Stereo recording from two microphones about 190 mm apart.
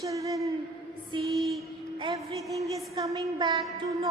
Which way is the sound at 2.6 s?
15° right (ahead or behind).